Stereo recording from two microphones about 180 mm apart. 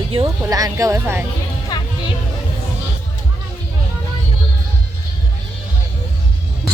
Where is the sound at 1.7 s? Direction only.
20° left (ahead or behind).